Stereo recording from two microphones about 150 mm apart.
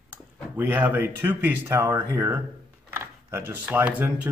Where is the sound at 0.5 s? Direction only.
15° right (ahead or behind).